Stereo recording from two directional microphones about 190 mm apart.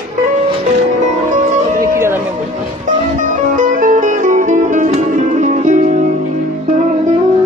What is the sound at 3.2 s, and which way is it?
Music, 45° right (ahead or behind).